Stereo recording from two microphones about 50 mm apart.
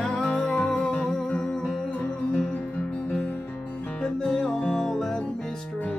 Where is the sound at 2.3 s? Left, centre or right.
Left.